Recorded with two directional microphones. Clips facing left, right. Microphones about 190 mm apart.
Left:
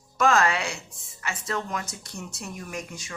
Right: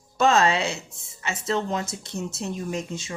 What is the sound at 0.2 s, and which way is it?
Speech, 25° right (ahead or behind).